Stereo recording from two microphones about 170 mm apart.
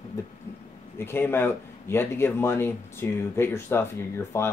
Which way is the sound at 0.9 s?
15° left (ahead or behind).